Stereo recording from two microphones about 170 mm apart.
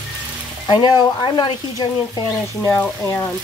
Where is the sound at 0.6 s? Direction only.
25° left (ahead or behind).